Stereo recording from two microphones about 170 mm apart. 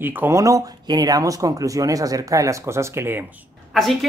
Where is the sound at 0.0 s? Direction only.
15° right (ahead or behind).